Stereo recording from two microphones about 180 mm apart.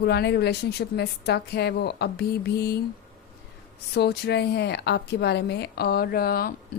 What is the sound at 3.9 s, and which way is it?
A woman's voice, 65° left (ahead or behind).